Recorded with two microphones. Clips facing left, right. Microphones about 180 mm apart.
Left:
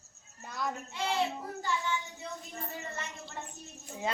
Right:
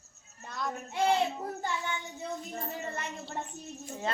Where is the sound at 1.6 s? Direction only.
55° right (ahead or behind).